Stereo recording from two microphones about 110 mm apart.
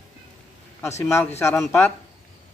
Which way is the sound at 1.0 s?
20° left (ahead or behind).